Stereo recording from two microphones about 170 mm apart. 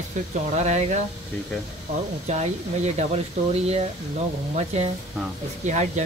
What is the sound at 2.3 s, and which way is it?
Speech, 40° right (ahead or behind).